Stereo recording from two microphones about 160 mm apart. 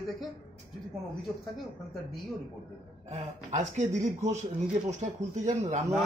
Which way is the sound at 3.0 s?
45° right (ahead or behind).